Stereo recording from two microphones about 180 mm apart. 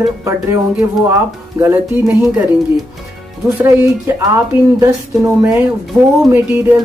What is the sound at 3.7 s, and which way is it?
Speech, 15° right (ahead or behind).